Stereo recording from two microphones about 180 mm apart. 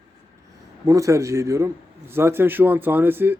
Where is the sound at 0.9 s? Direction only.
15° right (ahead or behind).